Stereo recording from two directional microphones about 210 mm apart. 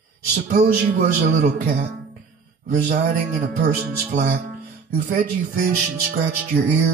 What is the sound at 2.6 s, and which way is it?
Speech, 45° right (ahead or behind).